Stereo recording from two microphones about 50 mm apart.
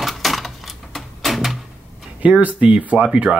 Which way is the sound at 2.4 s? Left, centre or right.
Right.